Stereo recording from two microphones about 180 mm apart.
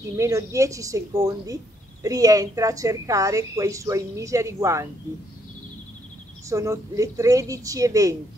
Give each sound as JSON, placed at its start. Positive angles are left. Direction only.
{"t": 0.2, "sound": "a woman's voice", "side_deg": -15}
{"t": 6.5, "sound": "a woman's voice", "side_deg": -15}